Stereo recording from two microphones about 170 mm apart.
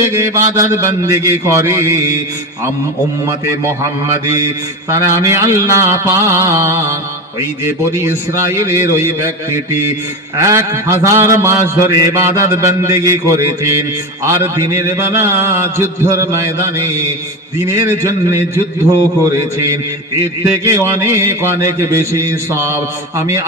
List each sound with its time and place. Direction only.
0.0 s a man's voice: 15° right (ahead or behind)
3.3 s a man's voice: 15° right (ahead or behind)